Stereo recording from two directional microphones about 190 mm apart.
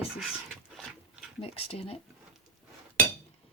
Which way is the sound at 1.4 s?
30° left (ahead or behind).